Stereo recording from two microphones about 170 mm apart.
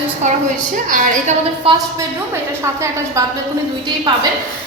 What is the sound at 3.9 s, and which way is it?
Speech, 25° right (ahead or behind).